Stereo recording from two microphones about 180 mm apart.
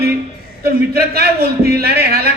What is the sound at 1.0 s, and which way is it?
A man's voice, 60° right (ahead or behind).